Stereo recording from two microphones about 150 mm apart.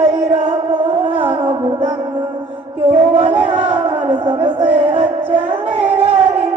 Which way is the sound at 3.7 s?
35° right (ahead or behind).